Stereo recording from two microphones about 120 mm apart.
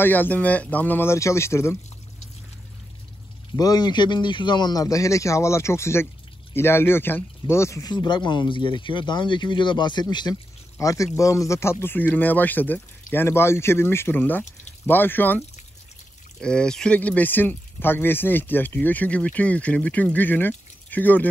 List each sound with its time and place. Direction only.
0.0 s speech: 15° left (ahead or behind)
3.5 s a man's voice: 35° left (ahead or behind)
7.9 s a man's voice: 40° left (ahead or behind); by 21.3 s 15° left (ahead or behind)